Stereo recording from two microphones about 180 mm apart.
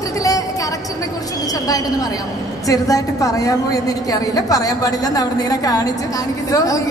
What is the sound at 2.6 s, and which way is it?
A woman's voice, 20° left (ahead or behind).